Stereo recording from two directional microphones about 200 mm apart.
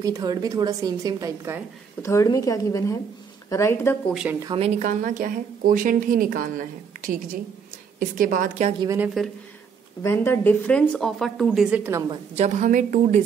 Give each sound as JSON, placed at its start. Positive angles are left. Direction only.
{"t": 0.0, "sound": "a woman's voice", "side_deg": -20}
{"t": 2.0, "sound": "speech", "side_deg": 15}
{"t": 4.1, "sound": "speech", "side_deg": -5}
{"t": 4.4, "sound": "speech", "side_deg": -20}
{"t": 4.6, "sound": "a woman's voice", "side_deg": -40}
{"t": 8.8, "sound": "a woman's voice", "side_deg": -10}
{"t": 10.0, "sound": "speech", "side_deg": 10}
{"t": 12.4, "sound": "a woman's voice", "side_deg": -35}